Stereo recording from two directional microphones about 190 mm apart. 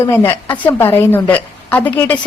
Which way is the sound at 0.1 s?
10° left (ahead or behind).